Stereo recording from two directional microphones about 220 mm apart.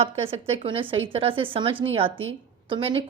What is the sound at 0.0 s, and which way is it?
Speech, 25° right (ahead or behind).